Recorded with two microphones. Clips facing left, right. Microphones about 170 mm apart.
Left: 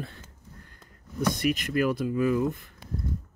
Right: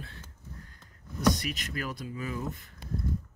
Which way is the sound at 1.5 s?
55° left (ahead or behind).